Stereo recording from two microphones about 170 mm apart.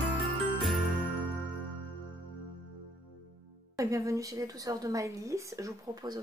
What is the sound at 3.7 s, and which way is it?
Speech, 20° right (ahead or behind).